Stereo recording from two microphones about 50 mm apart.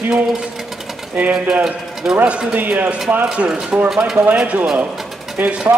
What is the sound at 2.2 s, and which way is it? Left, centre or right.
Speech, right.